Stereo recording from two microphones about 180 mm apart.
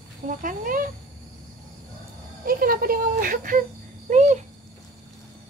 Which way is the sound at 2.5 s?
55° right (ahead or behind).